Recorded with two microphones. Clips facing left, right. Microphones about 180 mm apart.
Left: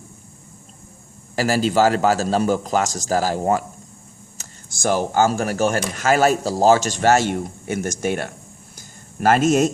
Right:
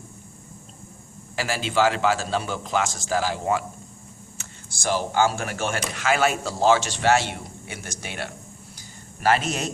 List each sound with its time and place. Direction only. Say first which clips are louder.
1.4 s a man's voice: left 6 dB; 40° left (ahead or behind)